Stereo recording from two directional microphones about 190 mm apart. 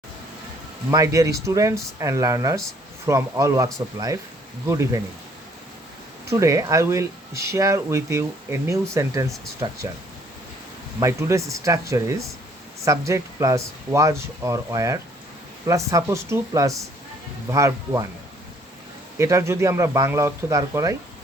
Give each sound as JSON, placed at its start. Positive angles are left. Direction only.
{"t": 0.9, "sound": "speech", "side_deg": -15}
{"t": 6.2, "sound": "speech", "side_deg": -15}
{"t": 11.0, "sound": "speech", "side_deg": -15}
{"t": 19.2, "sound": "speech", "side_deg": -15}